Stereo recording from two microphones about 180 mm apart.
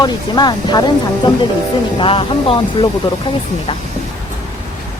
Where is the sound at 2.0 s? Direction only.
30° left (ahead or behind).